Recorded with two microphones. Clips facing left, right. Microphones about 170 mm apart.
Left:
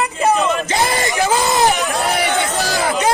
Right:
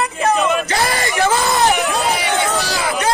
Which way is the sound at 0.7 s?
20° left (ahead or behind).